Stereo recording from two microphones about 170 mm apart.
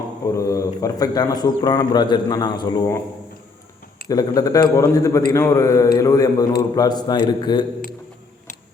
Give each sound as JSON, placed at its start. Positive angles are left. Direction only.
{"t": 0.3, "sound": "a man's voice", "side_deg": 20}
{"t": 4.1, "sound": "a man's voice", "side_deg": 20}